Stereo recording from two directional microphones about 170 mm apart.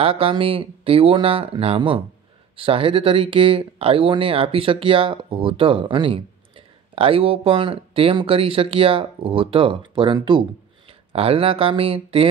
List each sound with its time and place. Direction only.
0.0 s speech: 35° right (ahead or behind)